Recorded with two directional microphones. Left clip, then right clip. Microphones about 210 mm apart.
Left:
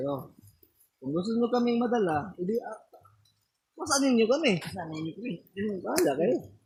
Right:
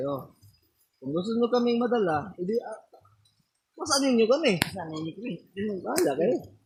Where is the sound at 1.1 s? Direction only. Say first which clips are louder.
Right 2 dB; 5° right (ahead or behind).